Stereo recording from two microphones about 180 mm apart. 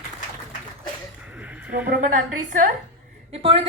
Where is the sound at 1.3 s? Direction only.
10° right (ahead or behind).